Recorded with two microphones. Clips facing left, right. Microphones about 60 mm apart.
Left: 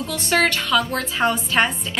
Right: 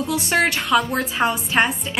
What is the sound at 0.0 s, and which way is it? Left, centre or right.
A woman's voice, centre.